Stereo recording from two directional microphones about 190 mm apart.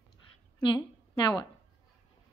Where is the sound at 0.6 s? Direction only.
25° left (ahead or behind).